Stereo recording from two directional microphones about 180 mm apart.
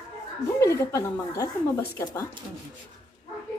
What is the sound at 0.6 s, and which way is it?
Speech, 15° left (ahead or behind).